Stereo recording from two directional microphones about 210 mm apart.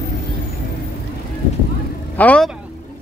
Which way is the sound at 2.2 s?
5° left (ahead or behind).